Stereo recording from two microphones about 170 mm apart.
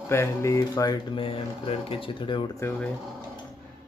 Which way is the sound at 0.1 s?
15° left (ahead or behind).